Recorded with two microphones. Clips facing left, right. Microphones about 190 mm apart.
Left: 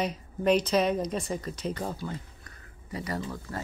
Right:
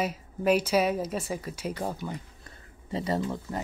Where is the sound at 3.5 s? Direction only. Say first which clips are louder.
Right 3 dB; 20° right (ahead or behind).